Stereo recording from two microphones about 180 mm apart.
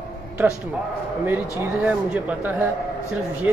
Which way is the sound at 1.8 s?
10° right (ahead or behind).